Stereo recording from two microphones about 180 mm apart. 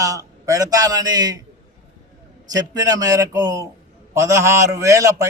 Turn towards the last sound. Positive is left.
turn(degrees=-15)  # may be behind; listen again after turning